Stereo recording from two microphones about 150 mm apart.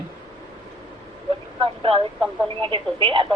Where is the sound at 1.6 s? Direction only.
35° right (ahead or behind).